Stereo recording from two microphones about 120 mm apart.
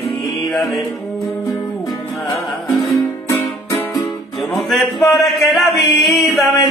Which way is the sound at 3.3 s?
25° left (ahead or behind).